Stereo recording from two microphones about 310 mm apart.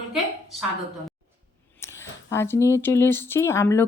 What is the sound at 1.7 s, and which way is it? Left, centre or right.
Speech, centre.